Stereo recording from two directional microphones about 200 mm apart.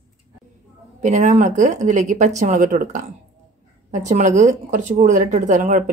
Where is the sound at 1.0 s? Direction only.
35° right (ahead or behind).